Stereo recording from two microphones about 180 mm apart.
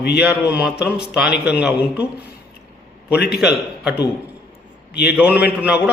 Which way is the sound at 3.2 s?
60° left (ahead or behind).